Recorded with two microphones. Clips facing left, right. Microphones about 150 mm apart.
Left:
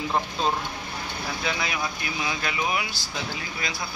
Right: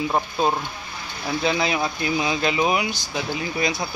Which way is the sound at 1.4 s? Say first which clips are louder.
Right 7 dB; 30° right (ahead or behind).